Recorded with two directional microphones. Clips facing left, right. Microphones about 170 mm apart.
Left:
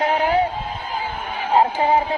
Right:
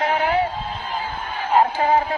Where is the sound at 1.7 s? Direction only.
15° left (ahead or behind).